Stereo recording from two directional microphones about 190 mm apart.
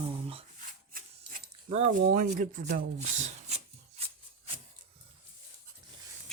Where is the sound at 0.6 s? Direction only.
45° right (ahead or behind).